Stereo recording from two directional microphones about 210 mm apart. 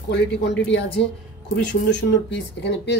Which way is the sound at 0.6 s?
60° left (ahead or behind).